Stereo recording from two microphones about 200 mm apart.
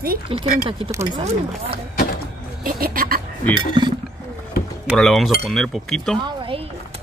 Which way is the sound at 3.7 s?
25° right (ahead or behind).